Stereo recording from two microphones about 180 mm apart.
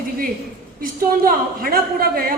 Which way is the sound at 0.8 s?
50° right (ahead or behind).